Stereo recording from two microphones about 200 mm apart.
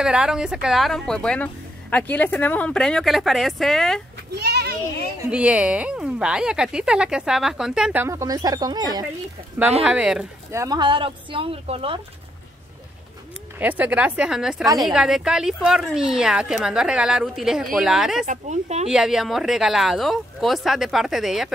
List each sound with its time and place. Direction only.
0.0 s speech: 5° right (ahead or behind)
4.4 s children playing: 55° right (ahead or behind)
5.3 s speech: 5° right (ahead or behind)
9.8 s speech: 5° right (ahead or behind)
10.5 s speech: 15° right (ahead or behind)
13.6 s speech: 10° right (ahead or behind)
18.2 s speech: 35° right (ahead or behind)
18.9 s speech: 5° right (ahead or behind)